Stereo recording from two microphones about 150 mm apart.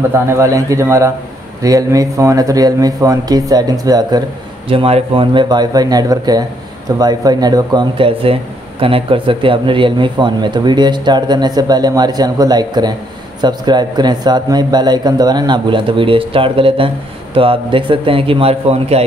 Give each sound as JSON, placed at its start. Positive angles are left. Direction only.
{"t": 0.1, "sound": "speech", "side_deg": -20}
{"t": 4.6, "sound": "a man's voice", "side_deg": -40}